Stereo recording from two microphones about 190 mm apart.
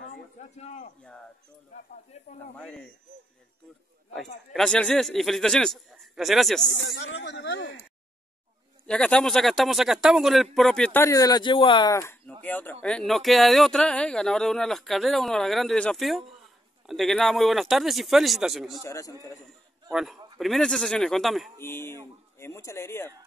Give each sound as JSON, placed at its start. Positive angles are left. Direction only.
{"t": 0.6, "sound": "speech", "side_deg": 35}
{"t": 2.1, "sound": "speech", "side_deg": 35}
{"t": 2.5, "sound": "speech", "side_deg": 5}
{"t": 4.5, "sound": "speech", "side_deg": 0}
{"t": 6.7, "sound": "speech", "side_deg": 80}
{"t": 8.8, "sound": "speech", "side_deg": 5}
{"t": 18.8, "sound": "speech", "side_deg": 15}
{"t": 19.9, "sound": "speech", "side_deg": 0}
{"t": 21.5, "sound": "speech", "side_deg": 10}